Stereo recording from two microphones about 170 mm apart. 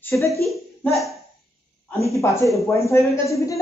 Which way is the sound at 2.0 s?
15° left (ahead or behind).